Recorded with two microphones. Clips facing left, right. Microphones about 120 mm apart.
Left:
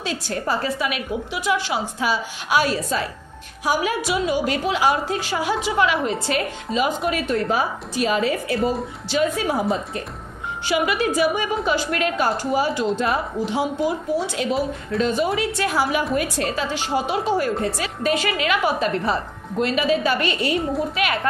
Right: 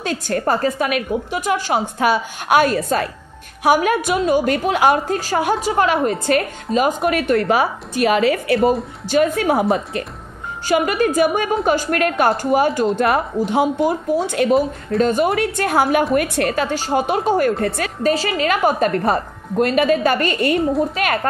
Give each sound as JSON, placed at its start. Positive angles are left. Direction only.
{"t": 0.0, "sound": "a woman's voice", "side_deg": -50}
{"t": 9.1, "sound": "speech", "side_deg": -55}
{"t": 10.7, "sound": "a woman's voice", "side_deg": -45}
{"t": 16.7, "sound": "a woman's voice", "side_deg": -45}
{"t": 18.0, "sound": "a woman's voice", "side_deg": -35}